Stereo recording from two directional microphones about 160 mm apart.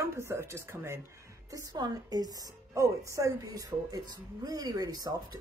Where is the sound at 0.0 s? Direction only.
15° right (ahead or behind).